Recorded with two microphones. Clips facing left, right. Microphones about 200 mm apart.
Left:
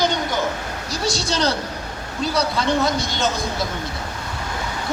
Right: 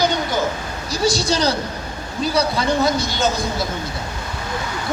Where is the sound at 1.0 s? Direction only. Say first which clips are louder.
Right 3 dB; centre (ahead or behind).